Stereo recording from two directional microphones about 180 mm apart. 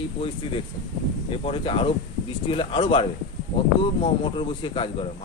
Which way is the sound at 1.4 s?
30° left (ahead or behind).